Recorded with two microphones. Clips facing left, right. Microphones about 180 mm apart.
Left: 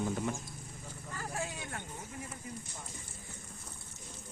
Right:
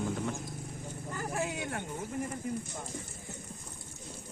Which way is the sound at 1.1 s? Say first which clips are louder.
Right 5 dB; 55° right (ahead or behind).